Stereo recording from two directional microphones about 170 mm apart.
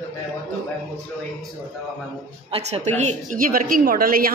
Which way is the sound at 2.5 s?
35° right (ahead or behind).